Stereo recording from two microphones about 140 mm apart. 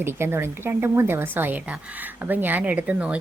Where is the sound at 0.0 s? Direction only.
15° right (ahead or behind).